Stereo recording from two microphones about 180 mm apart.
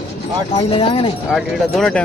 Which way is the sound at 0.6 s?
30° left (ahead or behind).